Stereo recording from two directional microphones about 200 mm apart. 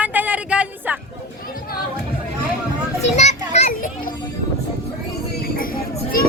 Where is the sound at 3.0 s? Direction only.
35° left (ahead or behind).